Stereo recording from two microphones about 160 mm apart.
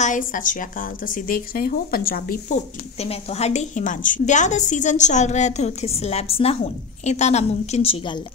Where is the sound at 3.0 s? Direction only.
40° left (ahead or behind).